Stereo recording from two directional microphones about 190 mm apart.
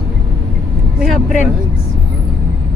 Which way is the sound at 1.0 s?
Centre (ahead or behind).